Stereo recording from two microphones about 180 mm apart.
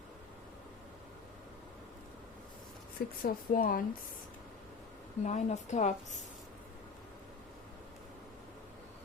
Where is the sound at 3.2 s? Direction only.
55° left (ahead or behind).